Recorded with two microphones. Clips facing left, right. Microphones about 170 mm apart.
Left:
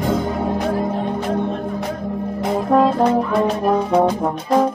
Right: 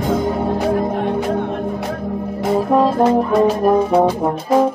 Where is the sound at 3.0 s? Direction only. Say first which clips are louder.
Right 2 dB; 10° right (ahead or behind).